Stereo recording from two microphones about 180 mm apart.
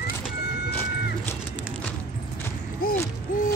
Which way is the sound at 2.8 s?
55° left (ahead or behind).